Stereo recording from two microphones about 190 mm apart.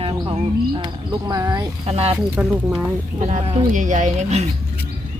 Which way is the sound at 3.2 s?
40° right (ahead or behind).